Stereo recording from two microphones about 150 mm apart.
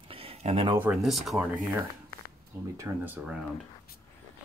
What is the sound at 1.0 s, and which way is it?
Speech, centre (ahead or behind).